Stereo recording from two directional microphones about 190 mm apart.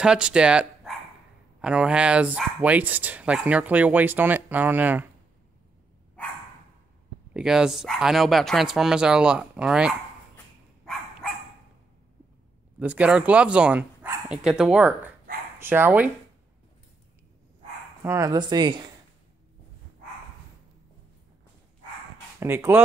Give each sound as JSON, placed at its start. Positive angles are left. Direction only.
{"t": 0.0, "sound": "speech", "side_deg": -5}
{"t": 7.3, "sound": "speech", "side_deg": -5}
{"t": 12.7, "sound": "speech", "side_deg": -5}
{"t": 18.0, "sound": "speech", "side_deg": -15}
{"t": 22.4, "sound": "speech", "side_deg": -15}